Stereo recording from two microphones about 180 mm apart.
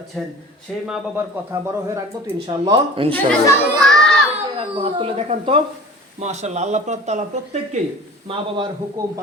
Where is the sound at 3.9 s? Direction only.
Centre (ahead or behind).